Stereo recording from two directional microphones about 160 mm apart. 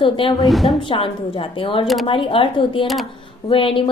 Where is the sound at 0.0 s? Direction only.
35° left (ahead or behind).